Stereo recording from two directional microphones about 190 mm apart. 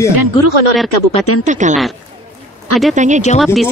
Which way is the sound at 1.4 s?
40° right (ahead or behind).